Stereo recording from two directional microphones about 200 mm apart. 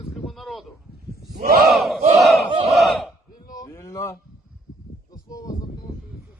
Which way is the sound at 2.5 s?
25° right (ahead or behind).